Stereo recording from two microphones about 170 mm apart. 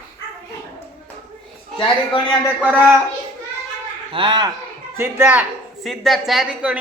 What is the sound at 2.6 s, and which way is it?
Speech, 10° right (ahead or behind).